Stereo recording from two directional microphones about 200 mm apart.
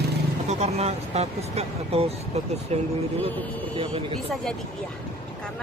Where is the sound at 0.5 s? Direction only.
35° right (ahead or behind).